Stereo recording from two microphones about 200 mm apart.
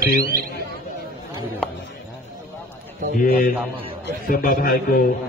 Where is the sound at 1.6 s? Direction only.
5° left (ahead or behind).